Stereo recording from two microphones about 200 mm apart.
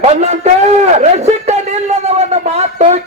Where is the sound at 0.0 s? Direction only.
35° right (ahead or behind).